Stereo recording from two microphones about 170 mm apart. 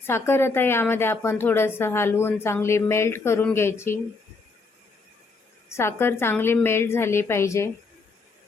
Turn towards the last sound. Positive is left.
turn(degrees=15)  # may be behind; listen again after turning